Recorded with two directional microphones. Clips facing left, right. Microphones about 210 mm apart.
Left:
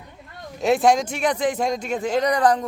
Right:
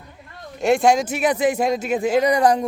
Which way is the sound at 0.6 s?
Centre (ahead or behind).